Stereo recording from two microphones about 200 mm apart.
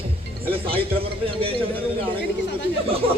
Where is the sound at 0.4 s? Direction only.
30° right (ahead or behind).